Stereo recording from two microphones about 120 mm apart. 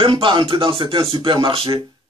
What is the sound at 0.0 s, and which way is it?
Speech, 45° right (ahead or behind).